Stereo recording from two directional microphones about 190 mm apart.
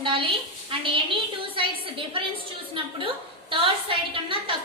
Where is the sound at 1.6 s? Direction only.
25° right (ahead or behind).